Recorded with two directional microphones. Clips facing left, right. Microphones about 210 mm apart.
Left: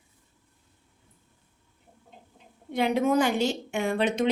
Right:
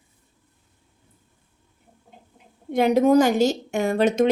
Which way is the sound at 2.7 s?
45° right (ahead or behind).